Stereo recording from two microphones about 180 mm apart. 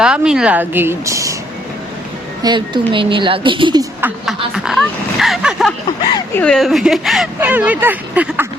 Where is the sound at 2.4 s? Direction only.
25° right (ahead or behind).